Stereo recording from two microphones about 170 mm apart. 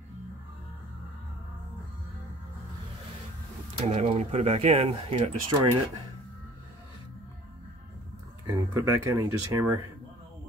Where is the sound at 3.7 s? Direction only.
40° right (ahead or behind).